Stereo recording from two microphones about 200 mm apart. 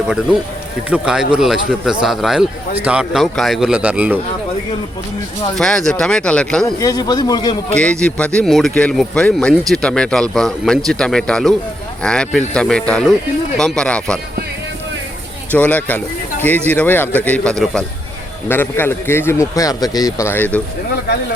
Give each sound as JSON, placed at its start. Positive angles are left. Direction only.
{"t": 0.9, "sound": "speech", "side_deg": -5}
{"t": 5.5, "sound": "speech", "side_deg": 0}
{"t": 6.7, "sound": "a man's voice", "side_deg": 20}
{"t": 7.7, "sound": "speech", "side_deg": 5}
{"t": 15.5, "sound": "speech", "side_deg": 10}